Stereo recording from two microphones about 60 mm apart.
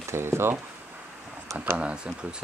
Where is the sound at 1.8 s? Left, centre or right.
Centre.